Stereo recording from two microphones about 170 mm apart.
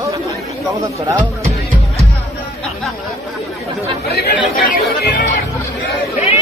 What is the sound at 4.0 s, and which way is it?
Speech, 70° left (ahead or behind).